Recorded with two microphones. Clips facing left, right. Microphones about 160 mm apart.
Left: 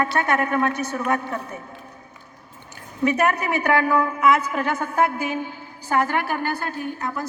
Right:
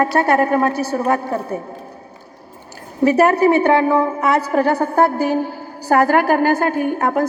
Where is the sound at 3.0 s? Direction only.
35° right (ahead or behind).